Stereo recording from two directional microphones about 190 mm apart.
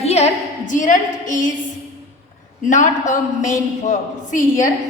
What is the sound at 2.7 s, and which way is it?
A woman's voice, 40° left (ahead or behind).